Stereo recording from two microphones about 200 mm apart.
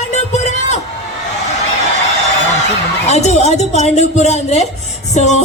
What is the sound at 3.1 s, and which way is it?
A man's voice, 35° left (ahead or behind).